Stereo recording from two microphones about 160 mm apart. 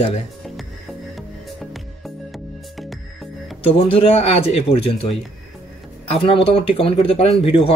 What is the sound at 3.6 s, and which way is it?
Speech, 35° left (ahead or behind).